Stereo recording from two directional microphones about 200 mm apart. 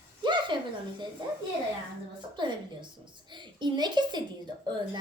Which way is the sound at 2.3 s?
25° right (ahead or behind).